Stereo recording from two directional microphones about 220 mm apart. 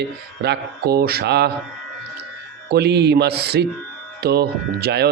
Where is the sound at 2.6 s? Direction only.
50° right (ahead or behind).